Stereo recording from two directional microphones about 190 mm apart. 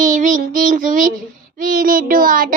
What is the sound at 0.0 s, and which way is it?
Child singing, 40° right (ahead or behind).